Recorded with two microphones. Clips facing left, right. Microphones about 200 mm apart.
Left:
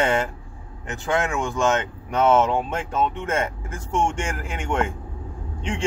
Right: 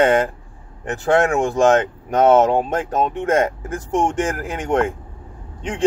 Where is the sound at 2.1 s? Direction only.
40° right (ahead or behind).